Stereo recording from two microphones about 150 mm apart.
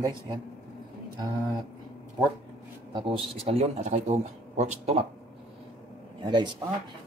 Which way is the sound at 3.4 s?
45° right (ahead or behind).